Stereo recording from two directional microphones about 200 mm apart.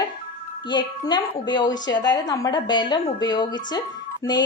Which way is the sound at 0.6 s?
20° left (ahead or behind).